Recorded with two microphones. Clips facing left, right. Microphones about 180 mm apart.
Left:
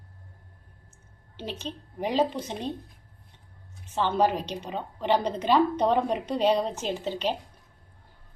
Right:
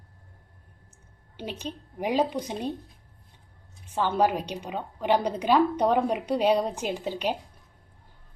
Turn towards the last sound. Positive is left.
turn(degrees=-10)  # may be behind; listen again after turning